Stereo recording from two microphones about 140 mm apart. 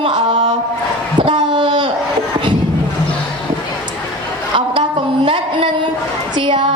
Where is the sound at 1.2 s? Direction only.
40° right (ahead or behind).